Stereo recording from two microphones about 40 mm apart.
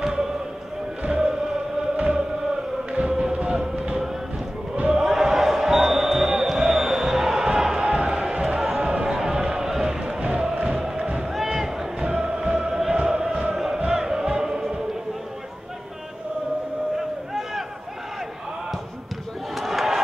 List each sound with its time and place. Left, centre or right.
0.0 s music: centre
1.0 s chant: centre
2.9 s music: right
5.0 s basketball bounce: centre
10.3 s music: right
11.4 s a sound: centre
12.0 s music: right
12.9 s chant: right
13.7 s music: centre
17.3 s a sound: centre
19.5 s crowd: centre